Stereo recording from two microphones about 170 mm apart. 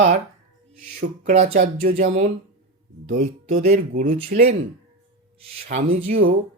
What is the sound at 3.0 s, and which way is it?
Speech, 50° right (ahead or behind).